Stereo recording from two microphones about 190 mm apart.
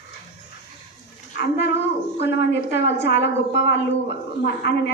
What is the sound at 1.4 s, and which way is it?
A woman's voice, 60° left (ahead or behind).